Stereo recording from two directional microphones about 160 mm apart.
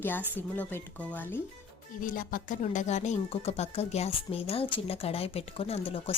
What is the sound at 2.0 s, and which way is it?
A woman's voice, 60° left (ahead or behind).